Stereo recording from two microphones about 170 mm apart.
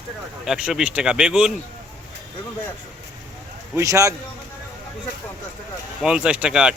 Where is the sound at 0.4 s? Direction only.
5° right (ahead or behind).